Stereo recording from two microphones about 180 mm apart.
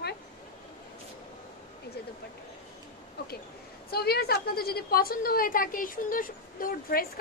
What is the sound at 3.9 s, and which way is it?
A woman's voice, 60° left (ahead or behind).